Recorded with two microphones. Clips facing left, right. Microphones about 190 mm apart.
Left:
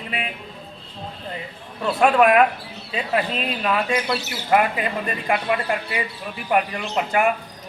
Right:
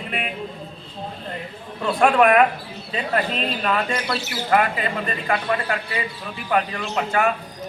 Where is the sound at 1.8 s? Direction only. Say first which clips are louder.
Even; 5° left (ahead or behind).